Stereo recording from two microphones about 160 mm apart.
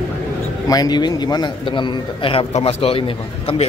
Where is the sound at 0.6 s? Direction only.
25° left (ahead or behind).